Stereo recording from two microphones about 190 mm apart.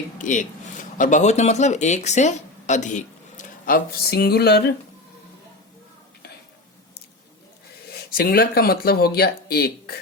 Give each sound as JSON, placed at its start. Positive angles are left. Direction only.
{"t": 0.2, "sound": "speech", "side_deg": 40}
{"t": 4.1, "sound": "a sound", "side_deg": 55}
{"t": 7.9, "sound": "speech", "side_deg": 50}